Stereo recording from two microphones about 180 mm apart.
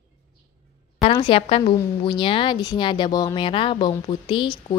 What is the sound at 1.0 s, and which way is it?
A woman's voice, 30° left (ahead or behind).